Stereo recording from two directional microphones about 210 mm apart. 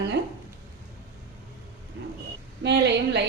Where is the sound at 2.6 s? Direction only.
55° right (ahead or behind).